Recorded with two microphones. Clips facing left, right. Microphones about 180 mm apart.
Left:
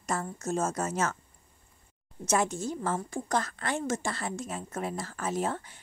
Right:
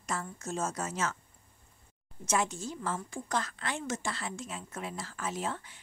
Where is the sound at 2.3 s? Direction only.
45° left (ahead or behind).